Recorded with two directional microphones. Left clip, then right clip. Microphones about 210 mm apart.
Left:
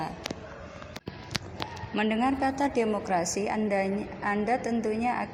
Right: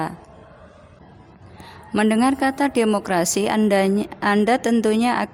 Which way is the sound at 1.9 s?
50° right (ahead or behind).